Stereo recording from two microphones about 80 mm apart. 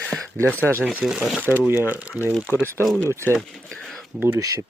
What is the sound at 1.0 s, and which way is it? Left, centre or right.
Speech, centre.